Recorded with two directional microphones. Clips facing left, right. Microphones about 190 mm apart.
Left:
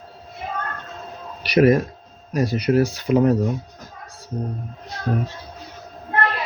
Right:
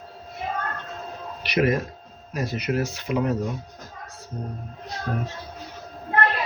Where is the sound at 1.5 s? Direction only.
35° left (ahead or behind).